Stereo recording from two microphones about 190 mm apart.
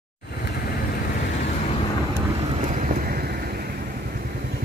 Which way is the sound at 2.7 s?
45° right (ahead or behind).